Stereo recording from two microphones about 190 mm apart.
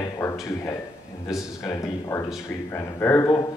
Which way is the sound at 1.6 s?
15° left (ahead or behind).